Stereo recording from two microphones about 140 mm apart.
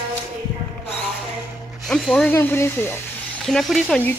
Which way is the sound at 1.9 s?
5° left (ahead or behind).